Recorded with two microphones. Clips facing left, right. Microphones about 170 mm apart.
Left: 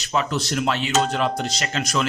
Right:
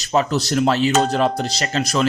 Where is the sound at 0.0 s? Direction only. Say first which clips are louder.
Right 5 dB; 40° right (ahead or behind).